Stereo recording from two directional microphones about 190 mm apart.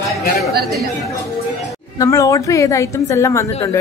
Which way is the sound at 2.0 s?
15° left (ahead or behind).